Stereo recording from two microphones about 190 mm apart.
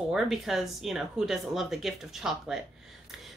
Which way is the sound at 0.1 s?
Centre (ahead or behind).